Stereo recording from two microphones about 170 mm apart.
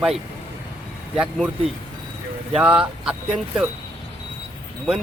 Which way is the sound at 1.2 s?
5° right (ahead or behind).